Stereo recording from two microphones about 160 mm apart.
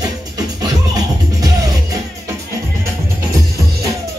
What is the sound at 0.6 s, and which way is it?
Music, 25° right (ahead or behind).